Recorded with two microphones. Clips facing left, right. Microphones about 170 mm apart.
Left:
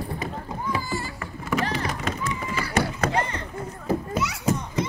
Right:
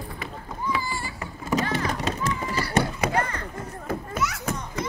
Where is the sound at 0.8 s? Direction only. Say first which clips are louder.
Left 1 dB; 45° left (ahead or behind).